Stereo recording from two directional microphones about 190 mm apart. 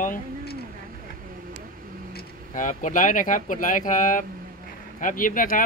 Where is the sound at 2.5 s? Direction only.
45° left (ahead or behind).